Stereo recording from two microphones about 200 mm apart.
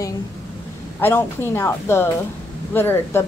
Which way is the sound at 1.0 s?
10° left (ahead or behind).